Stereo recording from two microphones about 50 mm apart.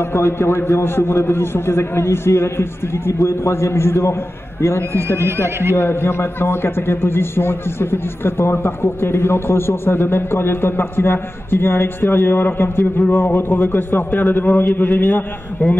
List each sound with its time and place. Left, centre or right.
0.0 s a man's voice: left
5.2 s speech: right
5.8 s a man's voice: left